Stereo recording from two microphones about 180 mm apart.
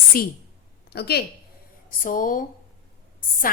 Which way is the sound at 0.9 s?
65° left (ahead or behind).